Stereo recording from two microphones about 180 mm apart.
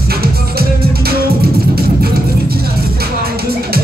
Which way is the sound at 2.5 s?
60° right (ahead or behind).